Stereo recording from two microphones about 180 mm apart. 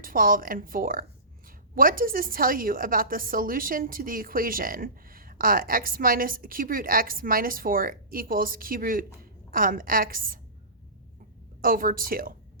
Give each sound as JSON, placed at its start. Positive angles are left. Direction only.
{"t": 0.0, "sound": "a woman's voice", "side_deg": -50}
{"t": 11.6, "sound": "a woman's voice", "side_deg": -50}